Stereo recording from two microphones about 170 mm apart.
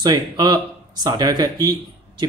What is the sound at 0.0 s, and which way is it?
Speech, 20° right (ahead or behind).